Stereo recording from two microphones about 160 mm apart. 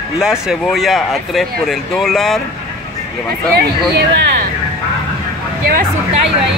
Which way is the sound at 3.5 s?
80° right.